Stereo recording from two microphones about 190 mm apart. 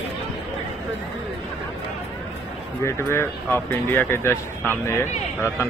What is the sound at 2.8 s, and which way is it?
A man's voice, 15° left (ahead or behind).